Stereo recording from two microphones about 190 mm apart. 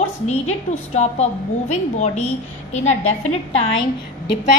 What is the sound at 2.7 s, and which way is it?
Speech, 35° left (ahead or behind).